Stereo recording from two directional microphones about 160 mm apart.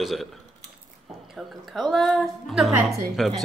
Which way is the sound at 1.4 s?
Centre (ahead or behind).